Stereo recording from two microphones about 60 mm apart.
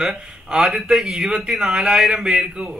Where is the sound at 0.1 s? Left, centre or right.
Centre.